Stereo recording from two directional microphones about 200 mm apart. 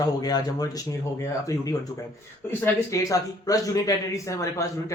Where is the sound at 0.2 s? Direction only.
20° left (ahead or behind).